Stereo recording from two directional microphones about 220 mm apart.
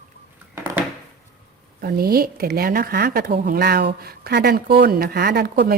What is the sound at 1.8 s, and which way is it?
A woman's voice, 45° right (ahead or behind).